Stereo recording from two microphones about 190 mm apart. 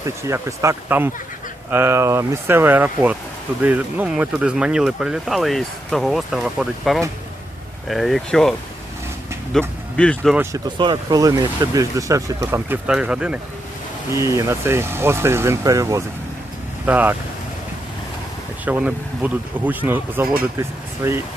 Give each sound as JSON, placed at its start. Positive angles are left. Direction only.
{"t": 0.0, "sound": "speech", "side_deg": -15}
{"t": 10.3, "sound": "speech", "side_deg": -15}
{"t": 14.1, "sound": "speech", "side_deg": -15}
{"t": 18.6, "sound": "speech", "side_deg": -5}